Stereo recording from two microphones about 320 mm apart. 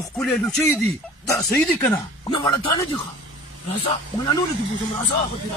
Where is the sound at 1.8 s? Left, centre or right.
Centre.